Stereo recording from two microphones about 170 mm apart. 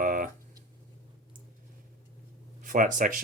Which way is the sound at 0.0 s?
55° right (ahead or behind).